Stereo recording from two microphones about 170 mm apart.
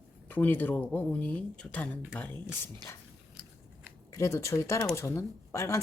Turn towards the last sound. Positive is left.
turn(degrees=15)  # may be behind; listen again after turning